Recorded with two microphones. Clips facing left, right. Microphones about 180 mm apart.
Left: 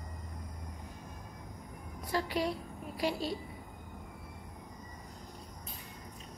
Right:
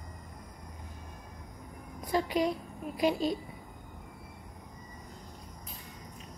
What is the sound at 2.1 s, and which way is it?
A woman's voice, 20° right (ahead or behind).